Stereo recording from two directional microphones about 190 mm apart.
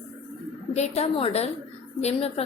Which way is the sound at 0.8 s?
35° left (ahead or behind).